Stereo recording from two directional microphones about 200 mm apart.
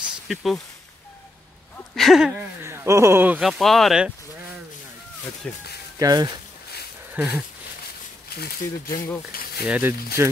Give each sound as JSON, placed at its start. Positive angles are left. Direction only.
{"t": 0.3, "sound": "speech", "side_deg": 0}
{"t": 2.0, "sound": "speech", "side_deg": 0}
{"t": 2.3, "sound": "speech", "side_deg": -15}
{"t": 5.4, "sound": "speech", "side_deg": 5}
{"t": 5.9, "sound": "speech", "side_deg": -20}
{"t": 7.2, "sound": "speech", "side_deg": -5}
{"t": 8.4, "sound": "speech", "side_deg": 50}
{"t": 9.3, "sound": "a sound", "side_deg": 50}
{"t": 9.7, "sound": "speech", "side_deg": -10}